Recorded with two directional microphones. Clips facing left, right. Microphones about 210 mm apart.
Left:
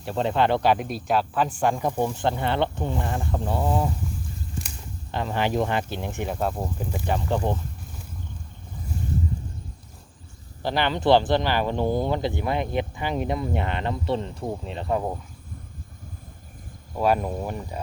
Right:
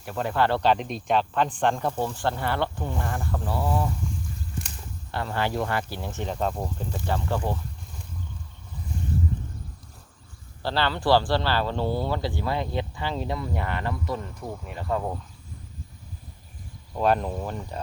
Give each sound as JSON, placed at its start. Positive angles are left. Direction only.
{"t": 0.0, "sound": "speech", "side_deg": 25}
{"t": 5.1, "sound": "speech", "side_deg": 15}
{"t": 10.6, "sound": "speech", "side_deg": 15}
{"t": 16.9, "sound": "speech", "side_deg": 10}